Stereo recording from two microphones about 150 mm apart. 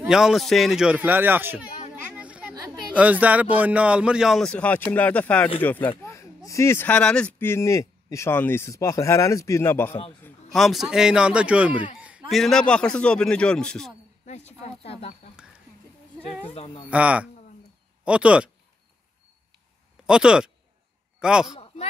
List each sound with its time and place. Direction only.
0.1 s speech: 5° right (ahead or behind)
2.0 s chatter: 10° right (ahead or behind)
2.5 s a sound: 25° right (ahead or behind)
2.9 s speech: 10° right (ahead or behind); by 9.9 s 15° left (ahead or behind)
10.5 s speech: centre (ahead or behind)
14.2 s speech: 50° left (ahead or behind)
16.5 s speech: 35° left (ahead or behind)
16.9 s speech: 10° right (ahead or behind)
20.1 s a man's voice: 5° right (ahead or behind)